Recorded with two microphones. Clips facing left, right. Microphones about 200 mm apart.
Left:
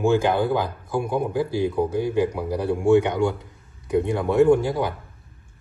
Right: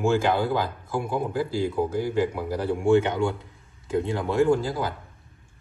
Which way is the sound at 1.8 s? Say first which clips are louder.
Left 2 dB; 5° right (ahead or behind).